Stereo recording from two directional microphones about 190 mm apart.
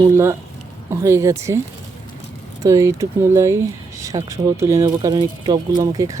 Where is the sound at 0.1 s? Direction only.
15° right (ahead or behind).